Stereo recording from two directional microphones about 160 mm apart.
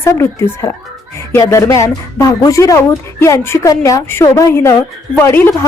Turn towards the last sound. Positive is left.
turn(degrees=15)  # may be behind; listen again after turning